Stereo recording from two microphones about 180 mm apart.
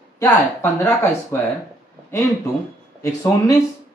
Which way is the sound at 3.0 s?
20° left (ahead or behind).